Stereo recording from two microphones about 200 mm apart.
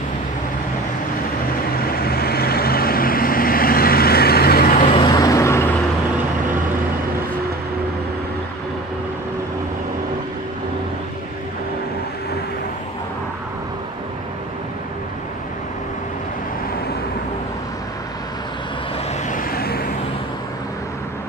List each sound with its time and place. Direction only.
1.9 s vehicle: 50° left (ahead or behind)
4.9 s vehicle: 20° left (ahead or behind)
19.2 s vehicle: 45° left (ahead or behind)